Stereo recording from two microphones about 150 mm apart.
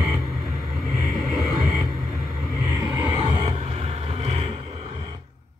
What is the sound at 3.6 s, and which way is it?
Vehicle, 40° right (ahead or behind).